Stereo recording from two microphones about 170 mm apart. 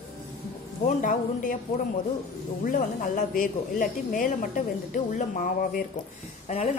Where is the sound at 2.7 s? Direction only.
50° left (ahead or behind).